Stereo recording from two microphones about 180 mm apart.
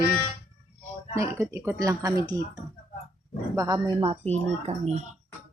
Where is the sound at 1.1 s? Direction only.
15° right (ahead or behind).